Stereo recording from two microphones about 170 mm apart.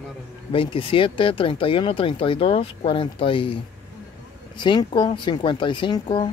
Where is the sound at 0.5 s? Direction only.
30° left (ahead or behind).